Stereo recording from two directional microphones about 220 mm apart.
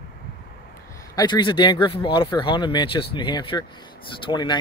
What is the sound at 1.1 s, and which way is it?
Speech, 20° left (ahead or behind).